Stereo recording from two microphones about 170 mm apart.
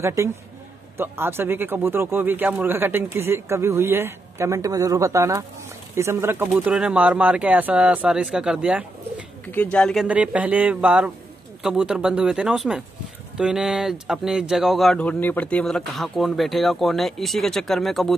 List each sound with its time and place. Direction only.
0.0 s a man's voice: 15° right (ahead or behind)
9.5 s speech: 10° left (ahead or behind)
10.0 s a man's voice: 10° right (ahead or behind)